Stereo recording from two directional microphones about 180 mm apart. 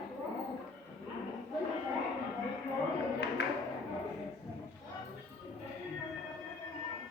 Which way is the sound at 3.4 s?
70° left (ahead or behind).